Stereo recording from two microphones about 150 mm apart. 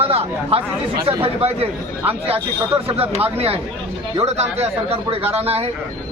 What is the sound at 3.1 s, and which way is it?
A man's voice, 45° right (ahead or behind).